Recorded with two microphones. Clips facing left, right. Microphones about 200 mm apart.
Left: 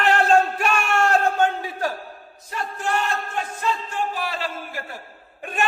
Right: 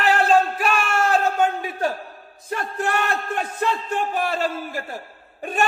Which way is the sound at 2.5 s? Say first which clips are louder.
Right 2 dB; 60° right (ahead or behind).